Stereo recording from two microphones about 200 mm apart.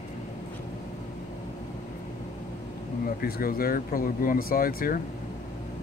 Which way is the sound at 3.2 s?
45° left (ahead or behind).